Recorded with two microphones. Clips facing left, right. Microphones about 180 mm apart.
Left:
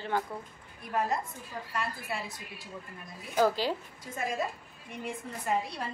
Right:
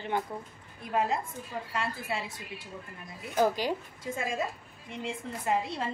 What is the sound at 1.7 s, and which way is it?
Speech, 25° right (ahead or behind).